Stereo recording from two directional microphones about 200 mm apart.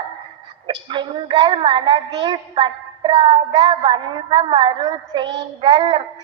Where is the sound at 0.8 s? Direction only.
25° right (ahead or behind).